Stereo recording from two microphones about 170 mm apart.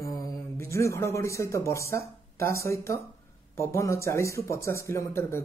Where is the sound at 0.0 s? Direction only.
15° left (ahead or behind).